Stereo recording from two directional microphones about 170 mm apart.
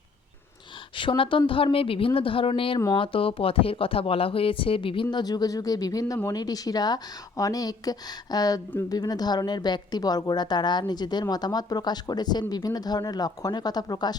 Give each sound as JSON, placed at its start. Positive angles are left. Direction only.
{"t": 0.9, "sound": "a woman's voice", "side_deg": 30}